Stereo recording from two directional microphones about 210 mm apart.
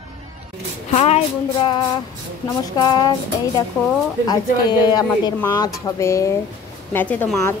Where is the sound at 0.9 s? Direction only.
30° left (ahead or behind).